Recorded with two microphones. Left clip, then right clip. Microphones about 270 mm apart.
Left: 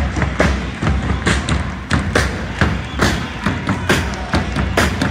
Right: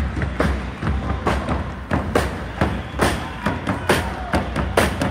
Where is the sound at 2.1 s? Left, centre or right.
Right.